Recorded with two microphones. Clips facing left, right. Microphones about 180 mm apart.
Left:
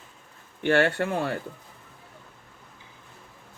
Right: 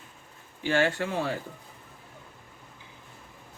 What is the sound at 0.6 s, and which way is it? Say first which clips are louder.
Speech: left 3 dB; 60° left (ahead or behind).